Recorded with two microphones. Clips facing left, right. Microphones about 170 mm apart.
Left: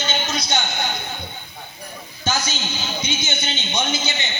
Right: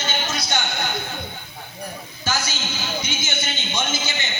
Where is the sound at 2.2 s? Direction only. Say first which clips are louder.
Left 2 dB; 20° left (ahead or behind).